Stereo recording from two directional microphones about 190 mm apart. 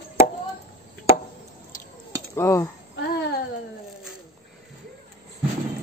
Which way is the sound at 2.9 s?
60° left (ahead or behind).